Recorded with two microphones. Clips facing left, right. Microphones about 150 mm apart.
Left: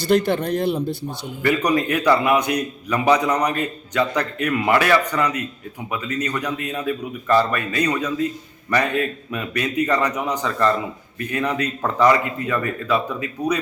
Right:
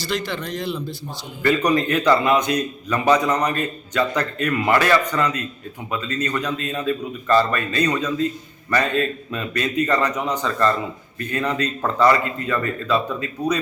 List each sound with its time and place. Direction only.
0.1 s speech: 55° left (ahead or behind)
1.4 s a man's voice: 10° left (ahead or behind)